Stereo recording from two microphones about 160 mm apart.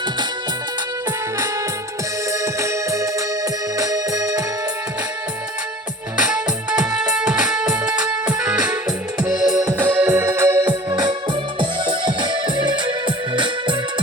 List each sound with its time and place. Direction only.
2.4 s organ: 20° right (ahead or behind)
6.1 s music: 5° right (ahead or behind)
9.6 s organ: 10° right (ahead or behind)
11.6 s music: 30° right (ahead or behind)